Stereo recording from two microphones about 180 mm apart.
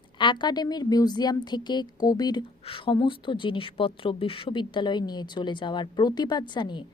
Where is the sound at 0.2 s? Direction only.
25° left (ahead or behind).